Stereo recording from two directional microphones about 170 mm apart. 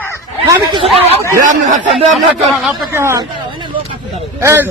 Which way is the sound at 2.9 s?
15° right (ahead or behind).